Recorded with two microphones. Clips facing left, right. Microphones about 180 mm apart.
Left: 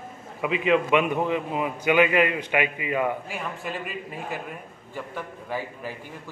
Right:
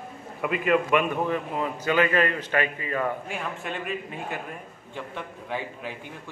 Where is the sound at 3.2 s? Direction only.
Centre (ahead or behind).